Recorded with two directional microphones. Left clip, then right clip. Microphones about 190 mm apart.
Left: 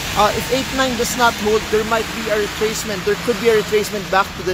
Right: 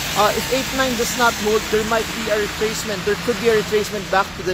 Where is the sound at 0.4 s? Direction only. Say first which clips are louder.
Left 1 dB; 60° right (ahead or behind).